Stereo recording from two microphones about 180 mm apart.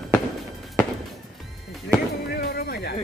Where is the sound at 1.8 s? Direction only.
60° left (ahead or behind).